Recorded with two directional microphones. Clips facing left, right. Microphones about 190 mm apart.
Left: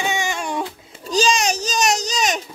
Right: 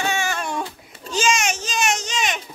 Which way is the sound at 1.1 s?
35° left (ahead or behind).